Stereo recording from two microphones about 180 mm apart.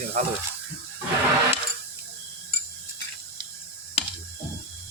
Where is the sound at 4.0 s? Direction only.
35° left (ahead or behind).